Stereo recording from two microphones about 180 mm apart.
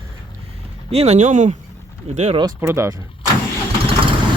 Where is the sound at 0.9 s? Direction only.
35° right (ahead or behind).